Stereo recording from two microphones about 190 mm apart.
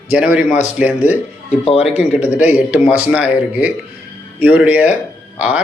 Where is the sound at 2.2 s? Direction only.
10° right (ahead or behind).